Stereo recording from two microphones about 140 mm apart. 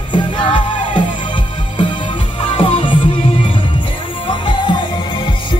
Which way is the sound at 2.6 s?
35° left (ahead or behind).